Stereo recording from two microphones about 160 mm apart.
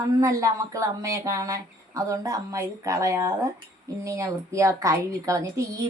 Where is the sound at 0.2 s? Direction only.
20° right (ahead or behind).